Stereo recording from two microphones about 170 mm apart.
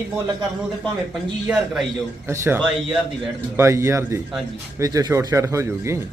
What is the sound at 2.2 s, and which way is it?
Speech, 15° right (ahead or behind).